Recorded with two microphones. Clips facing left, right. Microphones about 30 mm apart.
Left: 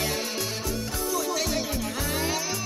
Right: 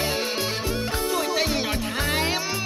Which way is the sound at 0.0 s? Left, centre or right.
Right.